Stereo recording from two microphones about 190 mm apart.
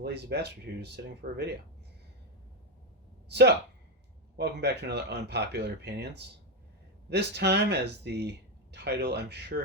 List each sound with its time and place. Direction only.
0.0 s speech: 60° right (ahead or behind)
3.2 s speech: 60° right (ahead or behind)